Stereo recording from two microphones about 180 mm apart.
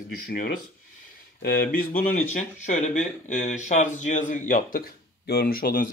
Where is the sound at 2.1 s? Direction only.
45° left (ahead or behind).